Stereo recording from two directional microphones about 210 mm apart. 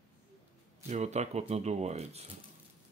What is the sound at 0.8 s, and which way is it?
Speech, 35° right (ahead or behind).